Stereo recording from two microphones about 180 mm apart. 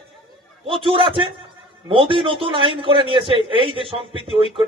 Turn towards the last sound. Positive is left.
turn(degrees=-30)  # may be behind; listen again after turning